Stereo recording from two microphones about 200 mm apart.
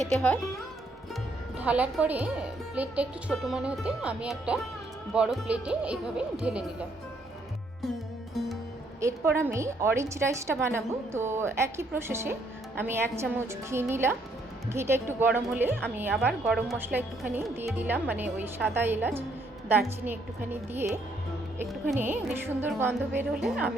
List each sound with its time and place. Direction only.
0.0 s speech: 5° left (ahead or behind)
1.5 s speech: 5° right (ahead or behind)
9.0 s a woman's voice: 15° right (ahead or behind)